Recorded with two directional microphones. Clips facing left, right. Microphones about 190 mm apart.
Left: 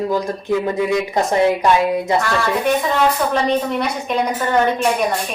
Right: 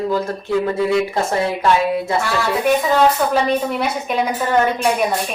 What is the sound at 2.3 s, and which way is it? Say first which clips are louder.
A woman's voice: right 1 dB; 5° right (ahead or behind).